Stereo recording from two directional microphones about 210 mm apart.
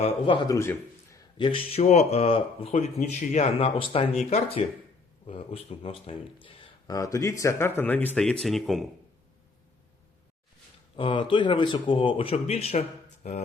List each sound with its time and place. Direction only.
0.0 s speech: 25° left (ahead or behind)
1.4 s speech: 25° left (ahead or behind); by 8.9 s centre (ahead or behind)
10.9 s speech: 25° left (ahead or behind)